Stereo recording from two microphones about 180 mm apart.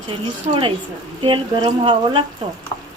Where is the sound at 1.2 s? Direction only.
25° right (ahead or behind).